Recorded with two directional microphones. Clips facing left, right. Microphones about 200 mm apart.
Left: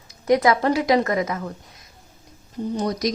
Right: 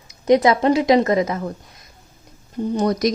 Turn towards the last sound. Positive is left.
turn(degrees=-60)  # may be behind; listen again after turning